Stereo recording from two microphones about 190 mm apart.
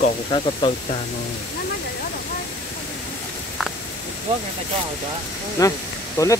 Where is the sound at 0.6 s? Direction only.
25° left (ahead or behind).